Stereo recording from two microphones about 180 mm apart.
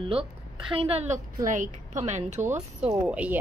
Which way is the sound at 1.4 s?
45° right (ahead or behind).